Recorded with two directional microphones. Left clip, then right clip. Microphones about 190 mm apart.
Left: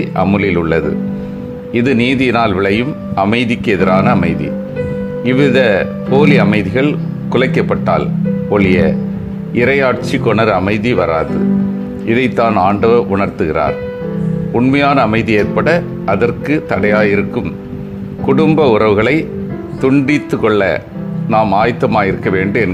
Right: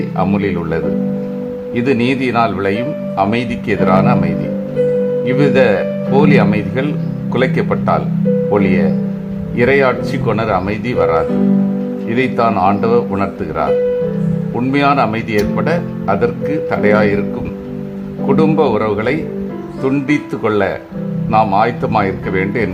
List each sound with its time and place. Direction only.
0.3 s speech: 15° left (ahead or behind)
14.7 s speech: 15° left (ahead or behind)
18.3 s speech: 15° left (ahead or behind)